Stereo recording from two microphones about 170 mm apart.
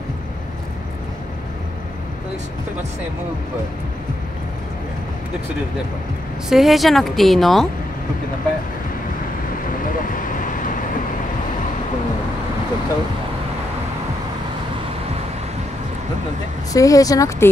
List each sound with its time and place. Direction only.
6.5 s a woman's voice: centre (ahead or behind)
10.1 s vehicle: 50° left (ahead or behind)
16.7 s speech: 20° left (ahead or behind)